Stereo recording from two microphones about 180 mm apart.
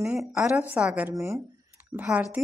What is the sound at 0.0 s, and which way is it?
A woman's voice, 5° right (ahead or behind).